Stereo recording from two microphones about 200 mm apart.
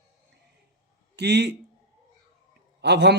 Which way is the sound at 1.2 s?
55° right (ahead or behind).